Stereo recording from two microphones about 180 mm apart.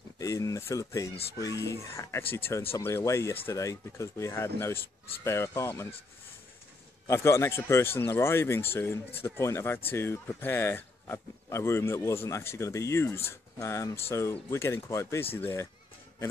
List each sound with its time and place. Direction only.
0.2 s speech: 20° left (ahead or behind)
7.1 s speech: 15° left (ahead or behind)